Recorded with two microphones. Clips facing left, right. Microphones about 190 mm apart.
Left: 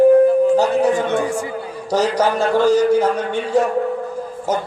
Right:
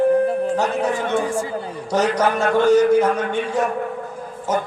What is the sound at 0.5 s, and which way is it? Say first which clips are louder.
Speech: left 5 dB; 30° left (ahead or behind).